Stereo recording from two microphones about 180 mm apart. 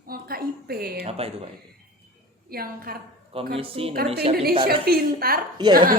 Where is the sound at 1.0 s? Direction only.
35° right (ahead or behind).